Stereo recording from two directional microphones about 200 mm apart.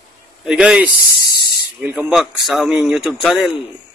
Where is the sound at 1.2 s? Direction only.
50° left (ahead or behind).